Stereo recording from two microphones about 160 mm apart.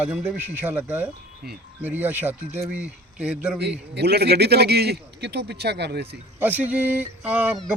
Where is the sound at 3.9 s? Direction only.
90° right.